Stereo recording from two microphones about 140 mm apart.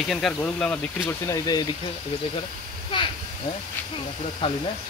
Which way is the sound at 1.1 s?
20° left (ahead or behind).